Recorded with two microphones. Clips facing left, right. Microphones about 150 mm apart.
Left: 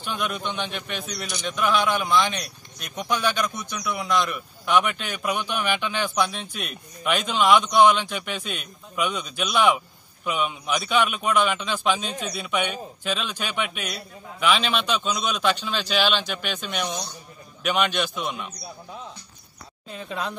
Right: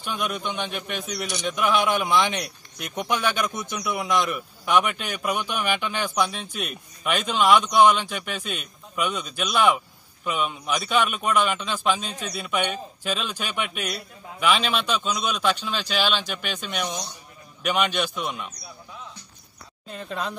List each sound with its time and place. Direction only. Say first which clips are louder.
0.0 s a man's voice: even; centre (ahead or behind)
4.3 s a man's voice: even; centre (ahead or behind)
19.9 s a man's voice: even; centre (ahead or behind)